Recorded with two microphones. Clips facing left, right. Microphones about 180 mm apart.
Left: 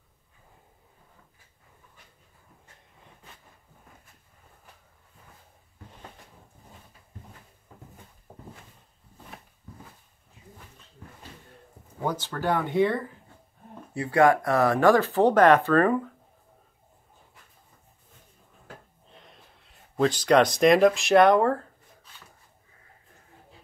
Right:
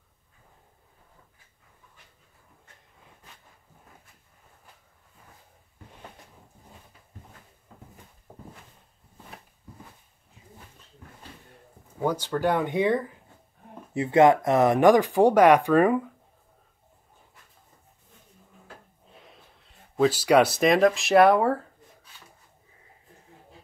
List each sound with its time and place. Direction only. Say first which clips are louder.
12.0 s speech: right 4 dB; 10° right (ahead or behind)
19.1 s speech: right 1 dB; 5° right (ahead or behind)